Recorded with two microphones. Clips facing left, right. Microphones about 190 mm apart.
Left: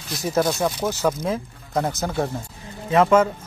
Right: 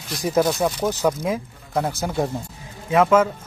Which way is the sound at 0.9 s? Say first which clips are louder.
Right 1 dB; 15° right (ahead or behind).